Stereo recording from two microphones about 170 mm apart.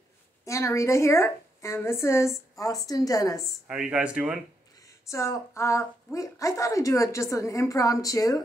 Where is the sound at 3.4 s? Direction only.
5° right (ahead or behind).